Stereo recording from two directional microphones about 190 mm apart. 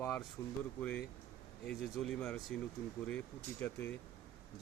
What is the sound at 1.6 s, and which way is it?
Speech, 5° left (ahead or behind).